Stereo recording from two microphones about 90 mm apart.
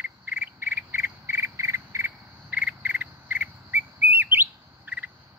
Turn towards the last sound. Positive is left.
turn(degrees=-20)  # may be behind; listen again after turning